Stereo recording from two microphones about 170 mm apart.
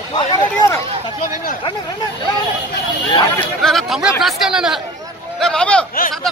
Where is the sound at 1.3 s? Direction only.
55° left (ahead or behind).